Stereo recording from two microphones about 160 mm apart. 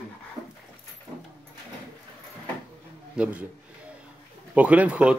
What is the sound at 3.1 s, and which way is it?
Speech, 5° right (ahead or behind).